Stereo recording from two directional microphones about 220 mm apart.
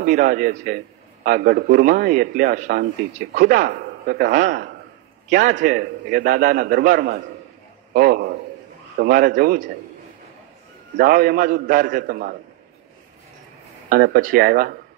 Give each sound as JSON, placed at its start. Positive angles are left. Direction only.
{"t": 0.0, "sound": "a man's voice", "side_deg": -40}
{"t": 7.9, "sound": "a sound", "side_deg": -40}
{"t": 9.0, "sound": "a man's voice", "side_deg": -40}
{"t": 11.0, "sound": "a man's voice", "side_deg": -40}
{"t": 13.8, "sound": "a man's voice", "side_deg": -40}